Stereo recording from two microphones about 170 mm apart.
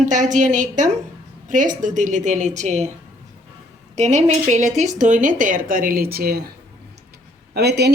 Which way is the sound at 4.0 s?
45° right (ahead or behind).